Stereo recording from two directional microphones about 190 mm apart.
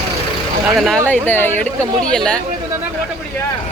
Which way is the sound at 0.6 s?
Centre (ahead or behind).